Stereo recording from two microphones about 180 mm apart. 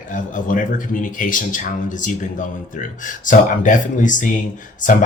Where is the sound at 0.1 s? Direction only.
45° left (ahead or behind).